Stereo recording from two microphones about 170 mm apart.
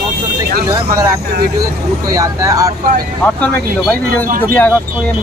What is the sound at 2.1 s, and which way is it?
Speech, 20° right (ahead or behind).